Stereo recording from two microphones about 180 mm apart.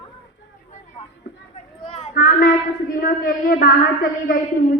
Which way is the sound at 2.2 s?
55° left (ahead or behind).